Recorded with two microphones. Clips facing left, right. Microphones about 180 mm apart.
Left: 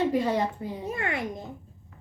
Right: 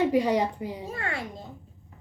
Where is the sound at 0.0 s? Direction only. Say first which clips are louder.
Right 2 dB; 15° right (ahead or behind).